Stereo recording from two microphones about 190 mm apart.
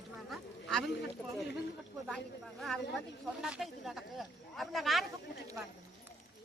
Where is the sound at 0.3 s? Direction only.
5° left (ahead or behind).